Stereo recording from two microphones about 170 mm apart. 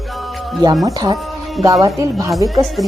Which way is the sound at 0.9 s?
20° right (ahead or behind).